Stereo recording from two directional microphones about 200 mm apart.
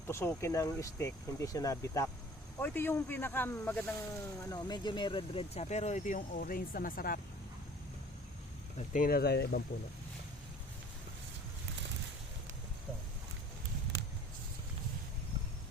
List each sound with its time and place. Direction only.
0.1 s speech: 15° left (ahead or behind); by 7.2 s 45° left (ahead or behind)
8.8 s speech: 40° left (ahead or behind)